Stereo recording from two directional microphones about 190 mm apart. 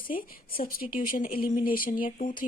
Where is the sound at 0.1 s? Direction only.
50° left (ahead or behind).